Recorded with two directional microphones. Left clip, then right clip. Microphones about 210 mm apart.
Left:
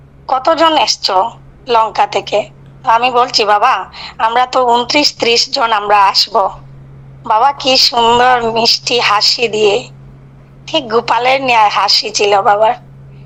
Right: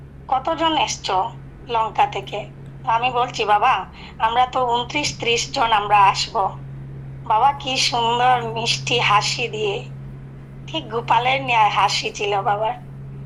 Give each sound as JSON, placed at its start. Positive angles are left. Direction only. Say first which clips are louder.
{"t": 0.3, "sound": "a woman's voice", "louder": "left 9 dB", "side_deg": 55}